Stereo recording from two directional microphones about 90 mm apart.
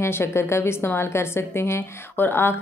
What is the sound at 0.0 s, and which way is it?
A woman's voice, 30° left (ahead or behind).